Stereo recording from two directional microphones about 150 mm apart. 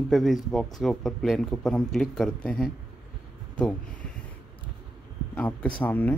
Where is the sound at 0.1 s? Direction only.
Centre (ahead or behind).